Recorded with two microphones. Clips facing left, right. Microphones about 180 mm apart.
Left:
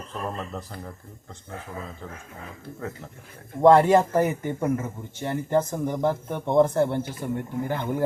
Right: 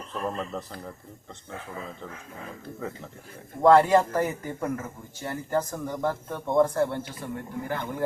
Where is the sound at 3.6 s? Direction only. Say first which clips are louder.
Left 2 dB; 25° left (ahead or behind).